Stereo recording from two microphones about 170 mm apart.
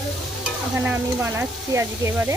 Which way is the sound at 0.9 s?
15° right (ahead or behind).